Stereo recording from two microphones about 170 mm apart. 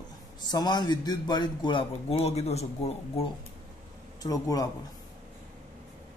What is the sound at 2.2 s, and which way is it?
Speech, 40° left (ahead or behind).